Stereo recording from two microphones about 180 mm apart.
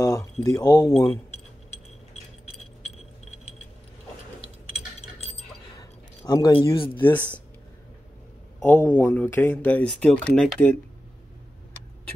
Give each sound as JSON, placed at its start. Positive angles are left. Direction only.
{"t": 0.0, "sound": "speech", "side_deg": 20}
{"t": 5.8, "sound": "a sound", "side_deg": 20}
{"t": 7.0, "sound": "speech", "side_deg": 10}
{"t": 8.6, "sound": "speech", "side_deg": 10}